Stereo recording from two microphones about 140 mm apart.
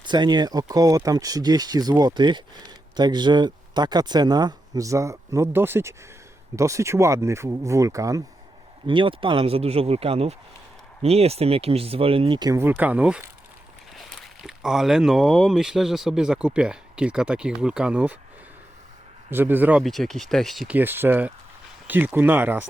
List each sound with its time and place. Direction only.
0.0 s speech: 30° right (ahead or behind)
8.9 s speech: 35° right (ahead or behind)
12.5 s speech: 15° right (ahead or behind)
19.3 s speech: 15° right (ahead or behind)
19.8 s speech: centre (ahead or behind)
20.7 s speech: 15° right (ahead or behind)